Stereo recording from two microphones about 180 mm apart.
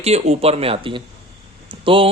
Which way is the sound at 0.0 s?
35° right (ahead or behind).